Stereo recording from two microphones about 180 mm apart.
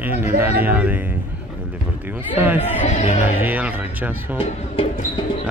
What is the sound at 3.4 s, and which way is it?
Speech, 10° right (ahead or behind).